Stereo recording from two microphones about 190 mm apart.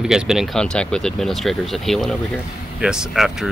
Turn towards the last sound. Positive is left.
turn(degrees=0)  # may be behind; listen again after turning